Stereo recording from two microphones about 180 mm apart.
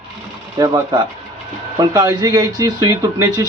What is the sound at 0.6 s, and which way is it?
Speech, 20° right (ahead or behind).